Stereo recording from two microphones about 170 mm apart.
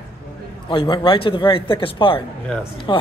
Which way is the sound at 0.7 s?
30° left (ahead or behind).